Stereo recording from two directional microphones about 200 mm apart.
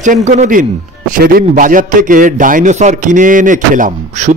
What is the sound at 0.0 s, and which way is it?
Speech, 40° right (ahead or behind).